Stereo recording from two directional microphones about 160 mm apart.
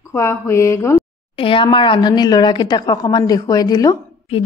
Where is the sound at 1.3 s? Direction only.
35° left (ahead or behind).